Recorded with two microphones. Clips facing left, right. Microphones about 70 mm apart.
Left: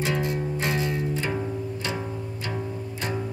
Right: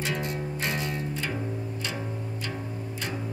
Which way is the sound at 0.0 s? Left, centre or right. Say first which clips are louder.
Left 4 dB; left.